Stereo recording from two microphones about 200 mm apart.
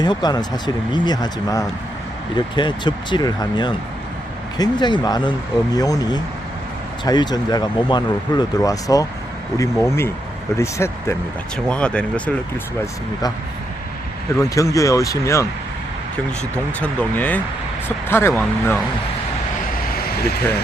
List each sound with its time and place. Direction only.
0.0 s speech: 20° left (ahead or behind)
14.3 s speech: 15° left (ahead or behind)
16.8 s speech: 5° left (ahead or behind)